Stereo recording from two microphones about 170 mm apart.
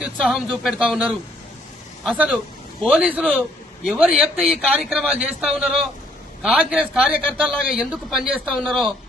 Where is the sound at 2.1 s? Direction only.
10° right (ahead or behind).